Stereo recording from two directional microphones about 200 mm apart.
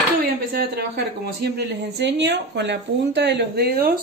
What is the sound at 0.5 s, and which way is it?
Speech, 50° right (ahead or behind).